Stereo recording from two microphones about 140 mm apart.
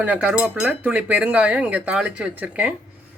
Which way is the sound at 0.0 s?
10° right (ahead or behind).